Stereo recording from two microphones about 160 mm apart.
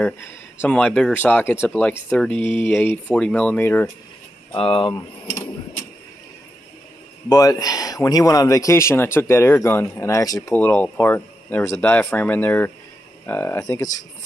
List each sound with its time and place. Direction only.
0.6 s speech: 5° left (ahead or behind)
4.6 s speech: 35° left (ahead or behind)
7.2 s speech: 20° left (ahead or behind)